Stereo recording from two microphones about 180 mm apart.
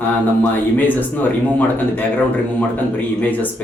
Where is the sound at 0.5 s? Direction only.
10° left (ahead or behind).